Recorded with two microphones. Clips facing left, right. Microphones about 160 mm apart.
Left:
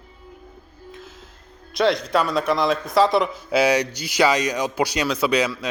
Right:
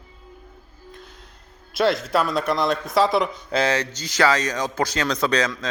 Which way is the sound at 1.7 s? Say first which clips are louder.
Left 1 dB; centre (ahead or behind).